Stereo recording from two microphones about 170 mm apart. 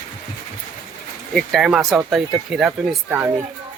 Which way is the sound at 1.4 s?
Centre (ahead or behind).